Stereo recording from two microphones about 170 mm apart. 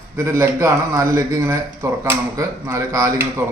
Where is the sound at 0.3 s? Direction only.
15° right (ahead or behind).